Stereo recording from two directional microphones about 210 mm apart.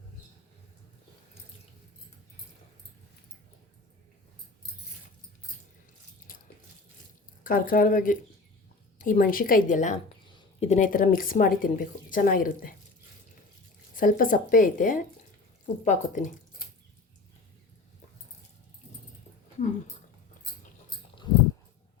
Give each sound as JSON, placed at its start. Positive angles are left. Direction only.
{"t": 7.4, "sound": "speech", "side_deg": 40}
{"t": 10.2, "sound": "a sound", "side_deg": 20}
{"t": 10.7, "sound": "speech", "side_deg": 40}
{"t": 13.9, "sound": "speech", "side_deg": 40}